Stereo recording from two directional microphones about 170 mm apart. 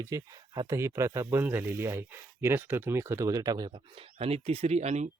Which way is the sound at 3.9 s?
35° right (ahead or behind).